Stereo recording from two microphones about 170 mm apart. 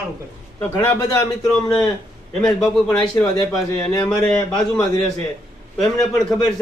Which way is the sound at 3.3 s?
20° left (ahead or behind).